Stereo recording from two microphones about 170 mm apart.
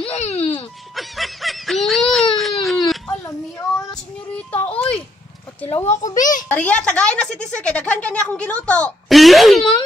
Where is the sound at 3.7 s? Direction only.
5° left (ahead or behind).